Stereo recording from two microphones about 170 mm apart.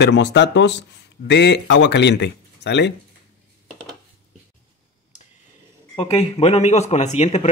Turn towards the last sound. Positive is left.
turn(degrees=40)  # may be behind; listen again after turning